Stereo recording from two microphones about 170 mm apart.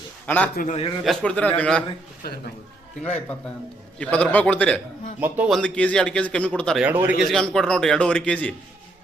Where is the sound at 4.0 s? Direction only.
10° left (ahead or behind).